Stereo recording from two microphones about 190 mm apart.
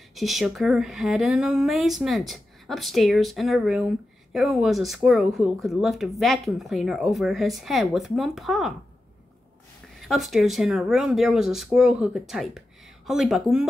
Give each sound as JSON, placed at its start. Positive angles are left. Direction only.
{"t": 0.1, "sound": "a woman's voice", "side_deg": 0}
{"t": 9.9, "sound": "a woman's voice", "side_deg": 0}